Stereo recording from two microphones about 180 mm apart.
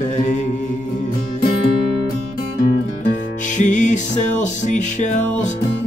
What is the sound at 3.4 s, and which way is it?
Music, 45° left (ahead or behind).